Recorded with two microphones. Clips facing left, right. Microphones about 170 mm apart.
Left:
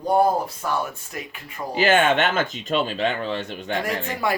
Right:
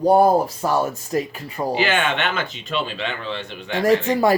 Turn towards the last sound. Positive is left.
turn(degrees=-40)  # may be behind; listen again after turning